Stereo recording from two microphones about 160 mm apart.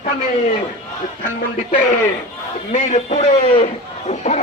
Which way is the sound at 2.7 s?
45° left (ahead or behind).